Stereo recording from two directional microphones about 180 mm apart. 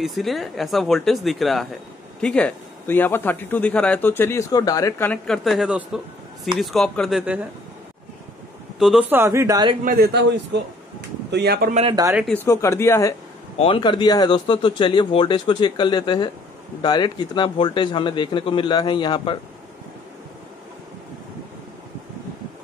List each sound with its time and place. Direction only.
0.0 s a man's voice: centre (ahead or behind)
8.7 s a man's voice: centre (ahead or behind); by 9.8 s 20° right (ahead or behind)
9.8 s speech: 65° right (ahead or behind)
11.9 s speech: 20° right (ahead or behind)
12.4 s a man's voice: 15° left (ahead or behind)
13.6 s a man's voice: 30° left (ahead or behind)